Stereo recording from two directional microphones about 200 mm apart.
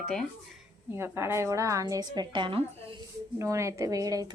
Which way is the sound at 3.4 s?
15° right (ahead or behind).